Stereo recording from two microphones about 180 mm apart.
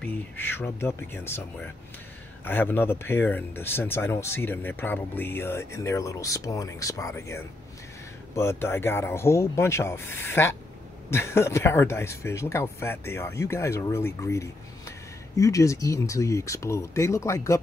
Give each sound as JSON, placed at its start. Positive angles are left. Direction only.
{"t": 0.0, "sound": "speech", "side_deg": 10}